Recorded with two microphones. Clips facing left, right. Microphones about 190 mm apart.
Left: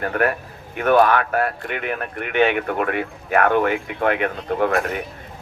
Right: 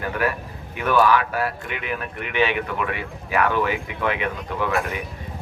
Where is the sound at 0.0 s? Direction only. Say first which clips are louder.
Left 3 dB; 55° left (ahead or behind).